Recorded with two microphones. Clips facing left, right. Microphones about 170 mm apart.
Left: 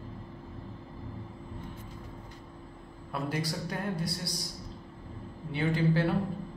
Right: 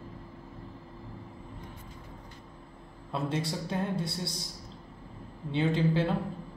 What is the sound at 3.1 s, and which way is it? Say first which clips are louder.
A man's voice: right 1 dB; 25° right (ahead or behind).